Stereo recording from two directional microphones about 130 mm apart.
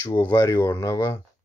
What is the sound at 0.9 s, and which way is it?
Speech, 25° left (ahead or behind).